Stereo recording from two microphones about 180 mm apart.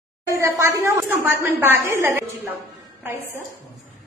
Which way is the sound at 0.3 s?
15° right (ahead or behind).